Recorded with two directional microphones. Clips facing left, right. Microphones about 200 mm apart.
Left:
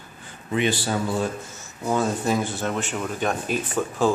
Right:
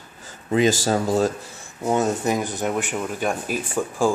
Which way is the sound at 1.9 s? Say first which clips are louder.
Right 2 dB; 20° right (ahead or behind).